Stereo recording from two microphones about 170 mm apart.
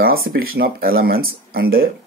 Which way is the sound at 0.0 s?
60° right (ahead or behind).